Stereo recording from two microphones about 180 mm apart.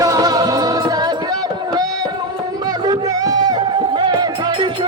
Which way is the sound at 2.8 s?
20° right (ahead or behind).